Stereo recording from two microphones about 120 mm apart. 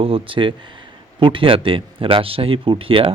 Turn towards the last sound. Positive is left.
turn(degrees=-45)  # may be behind; listen again after turning